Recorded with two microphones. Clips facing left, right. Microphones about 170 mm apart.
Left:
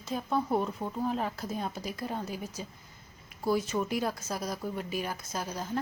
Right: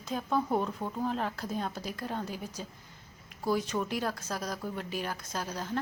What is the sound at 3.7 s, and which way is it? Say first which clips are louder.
Speech: left 2 dB; 5° left (ahead or behind).